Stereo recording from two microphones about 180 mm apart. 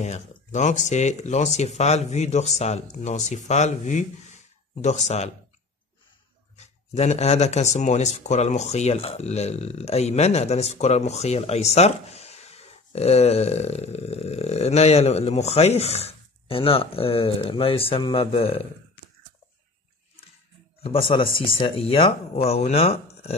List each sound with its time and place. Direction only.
0.5 s speech: 40° left (ahead or behind)
6.5 s speech: 35° left (ahead or behind)
20.8 s speech: 30° left (ahead or behind)